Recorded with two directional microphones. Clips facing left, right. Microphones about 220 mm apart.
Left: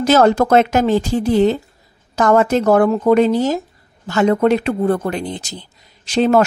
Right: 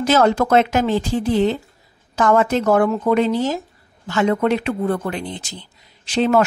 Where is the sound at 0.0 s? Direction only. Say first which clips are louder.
Left 3 dB; 40° left (ahead or behind).